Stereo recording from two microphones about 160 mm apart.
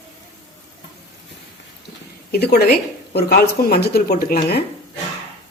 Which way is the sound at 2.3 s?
75° left (ahead or behind).